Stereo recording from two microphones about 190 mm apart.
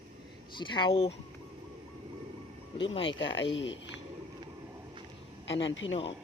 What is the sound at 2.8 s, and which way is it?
Speech, 30° left (ahead or behind).